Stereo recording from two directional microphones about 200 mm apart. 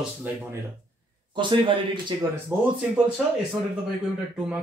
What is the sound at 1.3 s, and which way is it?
Speech, 25° right (ahead or behind).